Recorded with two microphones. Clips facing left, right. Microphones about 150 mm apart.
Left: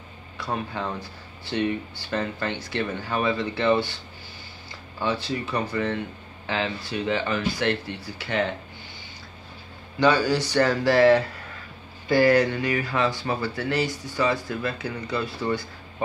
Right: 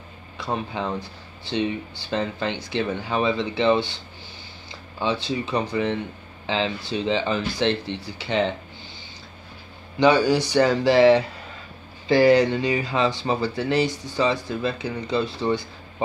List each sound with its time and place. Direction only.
0.4 s speech: 20° right (ahead or behind)
5.2 s speech: 20° right (ahead or behind)
9.9 s speech: 20° right (ahead or behind)